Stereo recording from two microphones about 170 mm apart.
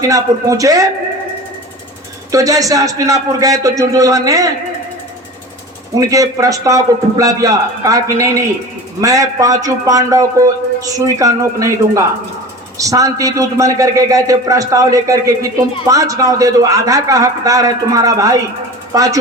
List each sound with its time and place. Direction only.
0.0 s speech: 20° right (ahead or behind)
2.3 s speech: 20° right (ahead or behind)
5.9 s speech: 20° right (ahead or behind)